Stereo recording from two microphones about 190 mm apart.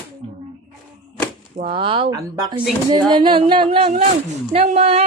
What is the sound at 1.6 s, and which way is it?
Speech, 25° right (ahead or behind).